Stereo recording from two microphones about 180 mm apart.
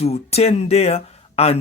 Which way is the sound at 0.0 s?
35° left (ahead or behind).